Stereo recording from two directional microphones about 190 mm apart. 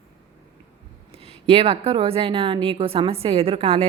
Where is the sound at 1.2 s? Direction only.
30° right (ahead or behind).